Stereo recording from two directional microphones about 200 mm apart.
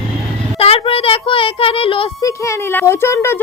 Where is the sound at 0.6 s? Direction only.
30° left (ahead or behind).